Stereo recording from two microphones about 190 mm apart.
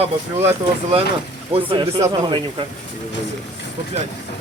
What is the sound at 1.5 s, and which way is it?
Speech, 30° right (ahead or behind).